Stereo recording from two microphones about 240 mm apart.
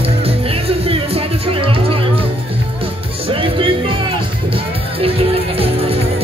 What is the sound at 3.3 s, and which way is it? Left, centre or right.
Music, right.